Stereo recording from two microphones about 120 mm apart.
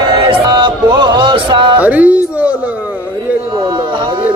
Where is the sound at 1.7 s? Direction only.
15° right (ahead or behind).